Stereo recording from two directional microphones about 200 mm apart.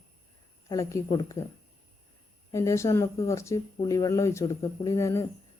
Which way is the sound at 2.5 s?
15° left (ahead or behind).